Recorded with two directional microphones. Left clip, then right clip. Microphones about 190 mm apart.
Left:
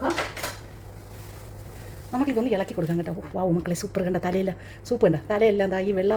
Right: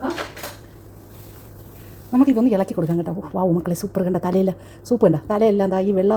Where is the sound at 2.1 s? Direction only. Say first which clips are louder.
Right 7 dB; 20° right (ahead or behind).